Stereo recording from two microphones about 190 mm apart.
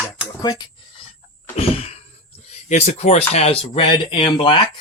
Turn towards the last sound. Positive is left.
turn(degrees=25)  # may be behind; listen again after turning